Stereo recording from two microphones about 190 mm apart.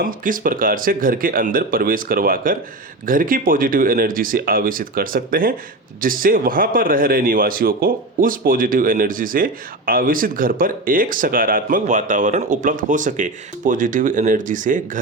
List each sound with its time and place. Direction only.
0.0 s a man's voice: 45° right (ahead or behind)